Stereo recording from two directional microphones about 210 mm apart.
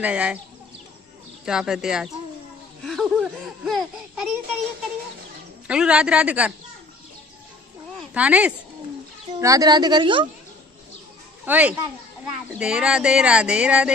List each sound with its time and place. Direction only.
0.0 s speech: 5° right (ahead or behind)
1.4 s speech: 5° right (ahead or behind)
5.7 s speech: 5° right (ahead or behind)
8.1 s speech: 5° right (ahead or behind)
9.4 s speech: 15° right (ahead or behind)
11.4 s speech: 5° right (ahead or behind)